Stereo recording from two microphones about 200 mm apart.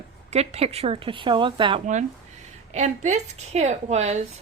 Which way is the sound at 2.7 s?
35° right (ahead or behind).